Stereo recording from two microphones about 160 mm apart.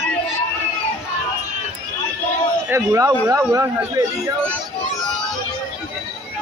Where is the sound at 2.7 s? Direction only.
15° right (ahead or behind).